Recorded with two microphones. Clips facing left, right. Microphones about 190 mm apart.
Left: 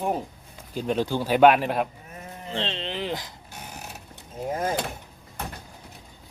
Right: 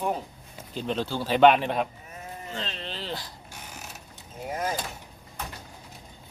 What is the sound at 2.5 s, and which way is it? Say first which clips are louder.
Speech: left 7 dB; 25° left (ahead or behind).